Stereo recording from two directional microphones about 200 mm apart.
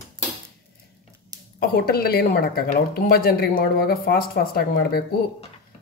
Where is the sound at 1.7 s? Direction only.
50° left (ahead or behind).